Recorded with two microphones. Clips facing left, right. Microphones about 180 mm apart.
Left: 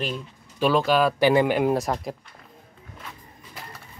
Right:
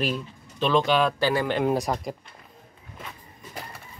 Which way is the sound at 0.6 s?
5° left (ahead or behind).